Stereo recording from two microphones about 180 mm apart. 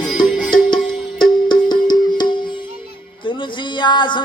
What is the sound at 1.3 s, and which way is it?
Music, 25° left (ahead or behind).